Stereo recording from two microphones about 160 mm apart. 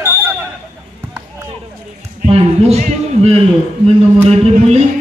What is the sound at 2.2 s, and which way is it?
A man's voice, 40° right (ahead or behind).